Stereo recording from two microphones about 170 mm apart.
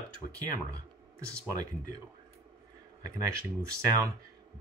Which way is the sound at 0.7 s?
20° right (ahead or behind).